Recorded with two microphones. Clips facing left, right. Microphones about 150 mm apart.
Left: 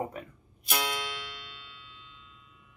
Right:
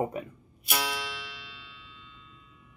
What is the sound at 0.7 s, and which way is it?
Music, 5° right (ahead or behind).